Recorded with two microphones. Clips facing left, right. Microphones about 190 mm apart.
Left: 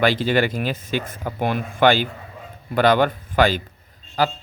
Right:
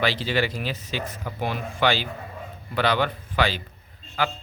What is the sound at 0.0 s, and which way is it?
A man's voice, 50° left (ahead or behind).